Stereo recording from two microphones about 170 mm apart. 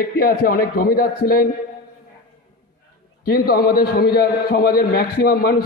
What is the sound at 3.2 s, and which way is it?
A man's voice, 60° left (ahead or behind).